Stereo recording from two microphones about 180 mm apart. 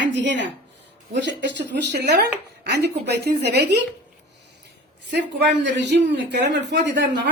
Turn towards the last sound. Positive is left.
turn(degrees=-70)  # may be behind; listen again after turning